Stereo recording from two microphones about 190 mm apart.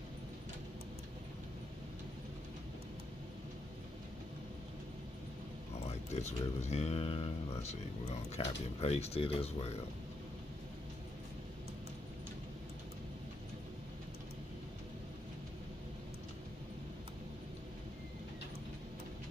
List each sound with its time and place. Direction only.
5.9 s speech: 35° left (ahead or behind)